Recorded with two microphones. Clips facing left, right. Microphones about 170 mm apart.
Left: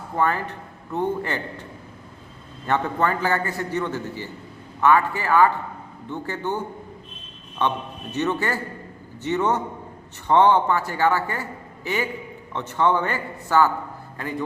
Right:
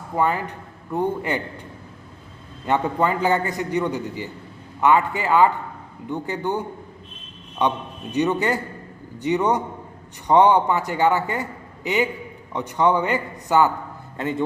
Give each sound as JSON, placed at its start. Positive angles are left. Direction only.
{"t": 0.2, "sound": "a man's voice", "side_deg": -15}
{"t": 2.6, "sound": "a man's voice", "side_deg": -15}